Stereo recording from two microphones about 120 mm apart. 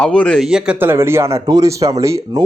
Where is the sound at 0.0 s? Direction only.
10° left (ahead or behind).